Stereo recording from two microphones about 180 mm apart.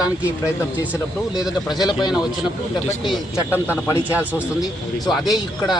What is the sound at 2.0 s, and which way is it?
Speech, 25° left (ahead or behind).